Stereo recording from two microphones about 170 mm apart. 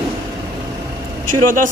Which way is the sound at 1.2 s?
50° right (ahead or behind).